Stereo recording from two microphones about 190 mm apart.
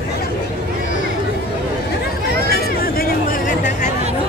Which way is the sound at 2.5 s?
50° left (ahead or behind).